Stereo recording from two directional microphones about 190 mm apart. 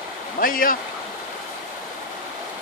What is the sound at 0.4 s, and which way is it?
Speech, 50° left (ahead or behind).